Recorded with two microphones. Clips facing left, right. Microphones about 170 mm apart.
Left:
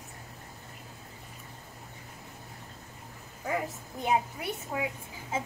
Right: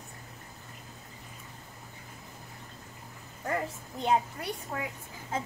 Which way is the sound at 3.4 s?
5° left (ahead or behind).